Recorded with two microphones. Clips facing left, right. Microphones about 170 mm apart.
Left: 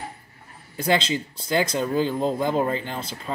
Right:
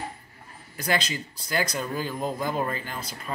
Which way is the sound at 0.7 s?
25° left (ahead or behind).